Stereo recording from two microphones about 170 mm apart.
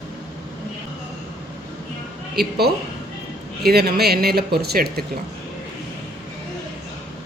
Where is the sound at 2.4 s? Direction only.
70° right (ahead or behind).